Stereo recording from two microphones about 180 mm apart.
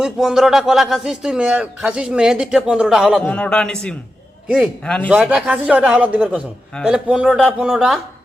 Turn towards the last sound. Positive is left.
turn(degrees=0)  # may be behind; listen again after turning